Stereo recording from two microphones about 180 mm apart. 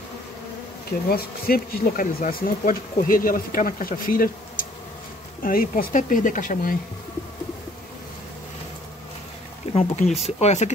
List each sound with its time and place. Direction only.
1.0 s speech: 55° left (ahead or behind)
9.7 s speech: 40° left (ahead or behind)